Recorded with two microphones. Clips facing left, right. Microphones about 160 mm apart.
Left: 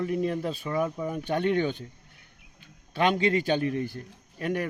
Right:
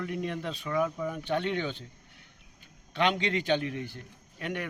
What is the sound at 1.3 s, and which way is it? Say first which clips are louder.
Speech: left 7 dB; 50° left (ahead or behind).